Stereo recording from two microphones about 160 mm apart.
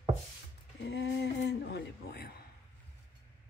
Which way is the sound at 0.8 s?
90° left.